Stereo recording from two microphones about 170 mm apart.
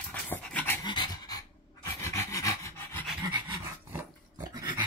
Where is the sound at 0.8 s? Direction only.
25° left (ahead or behind).